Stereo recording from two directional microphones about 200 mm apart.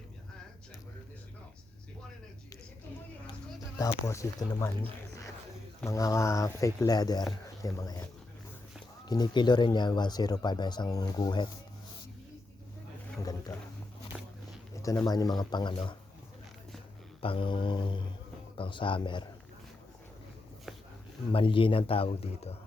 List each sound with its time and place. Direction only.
3.8 s speech: 15° left (ahead or behind)
9.0 s speech: 20° left (ahead or behind)
14.1 s a sound: 5° right (ahead or behind)
14.8 s speech: 15° left (ahead or behind)
17.2 s speech: 25° left (ahead or behind)
20.7 s a sound: centre (ahead or behind)
21.3 s speech: 25° left (ahead or behind)